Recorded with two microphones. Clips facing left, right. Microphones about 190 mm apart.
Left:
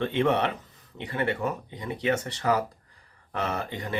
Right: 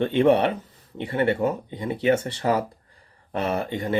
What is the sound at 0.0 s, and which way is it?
Speech, 30° right (ahead or behind).